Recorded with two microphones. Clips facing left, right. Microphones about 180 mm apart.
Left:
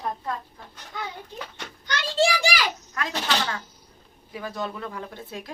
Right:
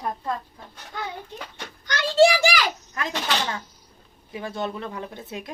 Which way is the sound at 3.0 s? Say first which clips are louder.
Even; 25° right (ahead or behind).